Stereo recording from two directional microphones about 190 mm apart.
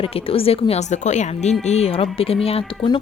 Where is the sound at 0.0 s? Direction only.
30° left (ahead or behind).